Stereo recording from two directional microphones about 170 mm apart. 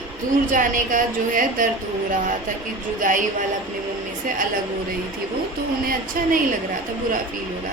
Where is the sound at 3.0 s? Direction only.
50° right (ahead or behind).